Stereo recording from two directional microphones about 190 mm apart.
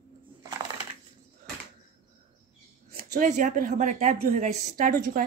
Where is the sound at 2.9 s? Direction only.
45° right (ahead or behind).